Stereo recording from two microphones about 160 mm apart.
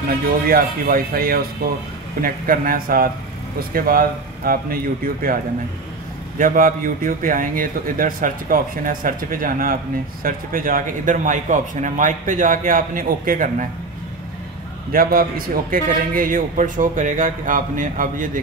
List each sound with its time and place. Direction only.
0.5 s a man's voice: 65° right (ahead or behind)
14.9 s a man's voice: 65° right (ahead or behind)